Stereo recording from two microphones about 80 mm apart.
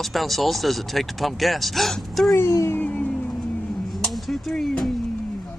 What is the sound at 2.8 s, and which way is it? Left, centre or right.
Music, centre.